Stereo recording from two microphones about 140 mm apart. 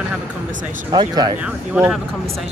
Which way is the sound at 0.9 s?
30° right (ahead or behind).